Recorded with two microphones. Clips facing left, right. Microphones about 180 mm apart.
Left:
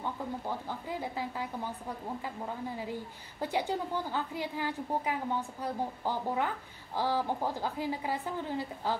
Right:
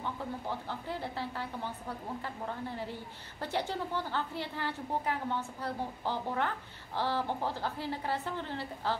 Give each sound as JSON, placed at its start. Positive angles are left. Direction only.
{"t": 0.7, "sound": "a woman's voice", "side_deg": 10}